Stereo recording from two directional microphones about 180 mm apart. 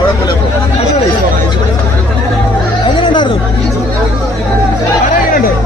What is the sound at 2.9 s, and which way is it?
Chatter, 25° left (ahead or behind).